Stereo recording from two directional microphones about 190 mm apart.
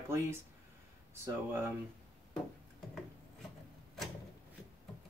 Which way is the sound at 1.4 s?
15° right (ahead or behind).